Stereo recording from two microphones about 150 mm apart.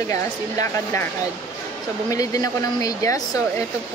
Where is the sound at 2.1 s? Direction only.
25° left (ahead or behind).